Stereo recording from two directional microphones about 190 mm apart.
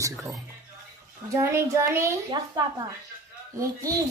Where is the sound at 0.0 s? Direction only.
15° right (ahead or behind).